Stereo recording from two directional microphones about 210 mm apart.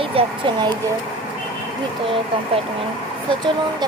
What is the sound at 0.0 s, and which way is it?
Speech, 25° right (ahead or behind).